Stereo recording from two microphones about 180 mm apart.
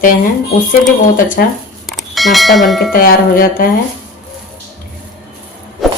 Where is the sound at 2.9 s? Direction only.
50° left (ahead or behind).